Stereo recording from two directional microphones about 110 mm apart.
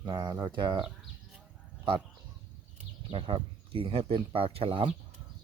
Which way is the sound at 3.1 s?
55° right (ahead or behind).